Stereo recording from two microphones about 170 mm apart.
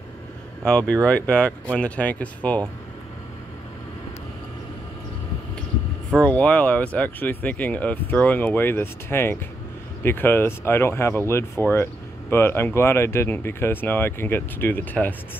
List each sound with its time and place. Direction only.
0.7 s speech: 5° left (ahead or behind)
6.2 s speech: 10° left (ahead or behind)